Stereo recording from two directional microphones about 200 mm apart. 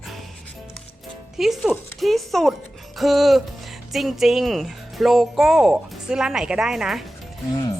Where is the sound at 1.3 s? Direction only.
Centre (ahead or behind).